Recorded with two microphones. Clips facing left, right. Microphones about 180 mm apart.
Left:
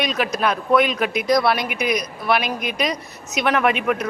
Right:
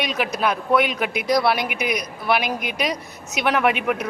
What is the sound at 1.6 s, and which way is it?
Speech, 60° right (ahead or behind).